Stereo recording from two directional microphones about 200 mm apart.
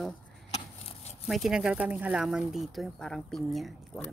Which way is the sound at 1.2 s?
Centre (ahead or behind).